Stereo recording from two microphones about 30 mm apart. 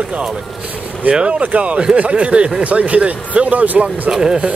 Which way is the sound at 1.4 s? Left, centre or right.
Right.